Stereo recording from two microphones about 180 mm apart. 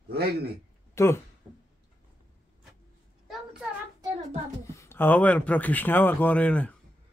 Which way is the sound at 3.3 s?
5° right (ahead or behind).